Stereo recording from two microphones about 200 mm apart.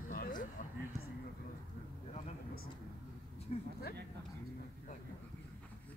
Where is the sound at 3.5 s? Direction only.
35° left (ahead or behind).